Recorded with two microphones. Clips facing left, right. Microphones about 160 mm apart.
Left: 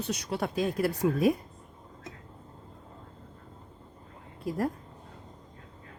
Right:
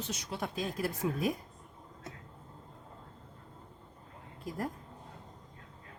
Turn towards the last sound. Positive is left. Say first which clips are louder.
# left 7 dB
turn(degrees=70)  # may be behind; listen again after turning